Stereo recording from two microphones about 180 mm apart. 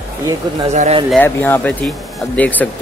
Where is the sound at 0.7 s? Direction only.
40° right (ahead or behind).